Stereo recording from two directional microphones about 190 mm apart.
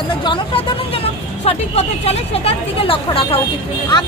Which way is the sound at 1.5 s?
35° left (ahead or behind).